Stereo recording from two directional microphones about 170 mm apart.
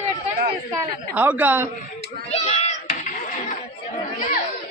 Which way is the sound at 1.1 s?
10° right (ahead or behind).